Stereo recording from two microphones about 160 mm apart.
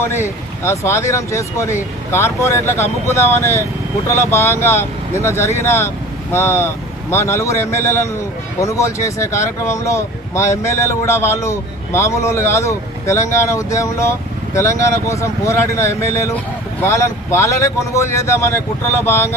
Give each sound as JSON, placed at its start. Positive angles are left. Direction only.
{"t": 0.0, "sound": "speech", "side_deg": 15}